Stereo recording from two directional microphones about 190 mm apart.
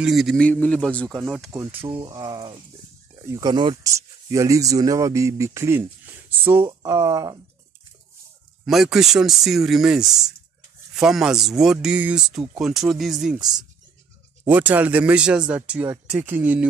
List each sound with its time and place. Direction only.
0.0 s speech: centre (ahead or behind)
1.5 s speech: 15° right (ahead or behind)
8.6 s speech: centre (ahead or behind)
14.5 s speech: 10° right (ahead or behind)